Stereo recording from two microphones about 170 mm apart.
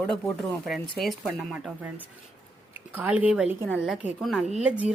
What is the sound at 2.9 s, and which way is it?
A woman's voice, 10° right (ahead or behind).